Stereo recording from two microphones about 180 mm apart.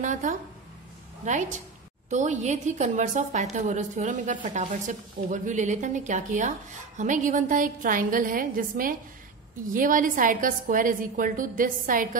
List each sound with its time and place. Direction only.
0.0 s a woman's voice: 45° right (ahead or behind)